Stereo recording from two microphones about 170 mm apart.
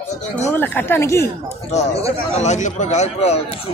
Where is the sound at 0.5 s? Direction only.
10° left (ahead or behind).